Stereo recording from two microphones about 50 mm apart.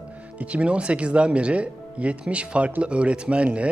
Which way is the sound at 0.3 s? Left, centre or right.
Right.